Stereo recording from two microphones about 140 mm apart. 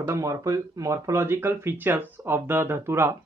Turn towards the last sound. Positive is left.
turn(degrees=-20)  # may be behind; listen again after turning